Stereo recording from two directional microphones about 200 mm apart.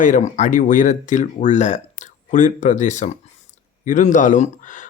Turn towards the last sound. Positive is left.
turn(degrees=40)  # may be behind; listen again after turning